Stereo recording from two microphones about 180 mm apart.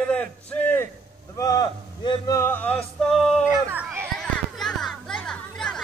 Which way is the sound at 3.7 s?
10° right (ahead or behind).